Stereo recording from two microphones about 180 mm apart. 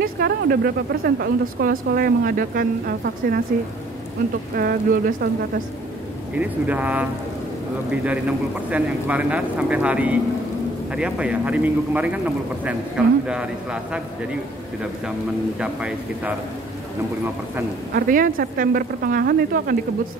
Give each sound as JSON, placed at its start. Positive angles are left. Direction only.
{"t": 0.0, "sound": "speech", "side_deg": -60}
{"t": 4.6, "sound": "speech", "side_deg": -60}
{"t": 6.3, "sound": "speech", "side_deg": -10}
{"t": 8.6, "sound": "a man's voice", "side_deg": -10}
{"t": 15.6, "sound": "a man's voice", "side_deg": -5}
{"t": 17.9, "sound": "speech", "side_deg": -50}